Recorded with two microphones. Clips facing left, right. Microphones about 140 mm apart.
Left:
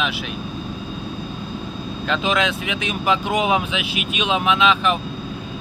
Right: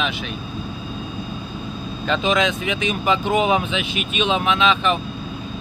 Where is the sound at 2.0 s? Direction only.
Centre (ahead or behind).